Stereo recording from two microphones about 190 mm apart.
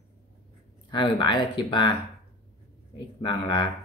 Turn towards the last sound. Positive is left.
turn(degrees=25)  # may be behind; listen again after turning